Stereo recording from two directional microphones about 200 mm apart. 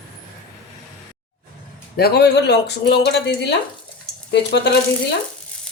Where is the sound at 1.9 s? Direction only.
50° left (ahead or behind).